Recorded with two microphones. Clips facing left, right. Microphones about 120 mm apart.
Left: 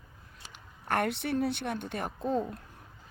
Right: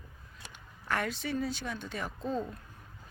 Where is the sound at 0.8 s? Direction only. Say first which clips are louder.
Left 4 dB; 55° left (ahead or behind).